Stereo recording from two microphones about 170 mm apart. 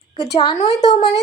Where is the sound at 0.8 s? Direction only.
40° left (ahead or behind).